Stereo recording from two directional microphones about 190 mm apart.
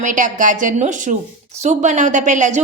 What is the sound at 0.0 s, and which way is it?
A woman's voice, 45° right (ahead or behind).